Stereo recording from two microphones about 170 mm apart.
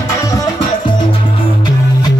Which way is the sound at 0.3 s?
25° left (ahead or behind).